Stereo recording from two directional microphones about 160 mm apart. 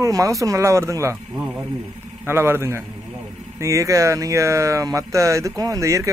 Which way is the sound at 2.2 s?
15° right (ahead or behind).